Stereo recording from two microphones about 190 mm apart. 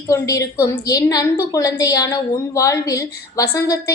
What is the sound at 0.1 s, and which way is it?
A woman's voice, 15° left (ahead or behind).